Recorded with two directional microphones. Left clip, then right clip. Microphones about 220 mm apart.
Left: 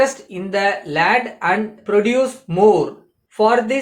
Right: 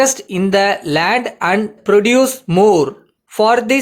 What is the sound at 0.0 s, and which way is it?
Speech, 50° right (ahead or behind).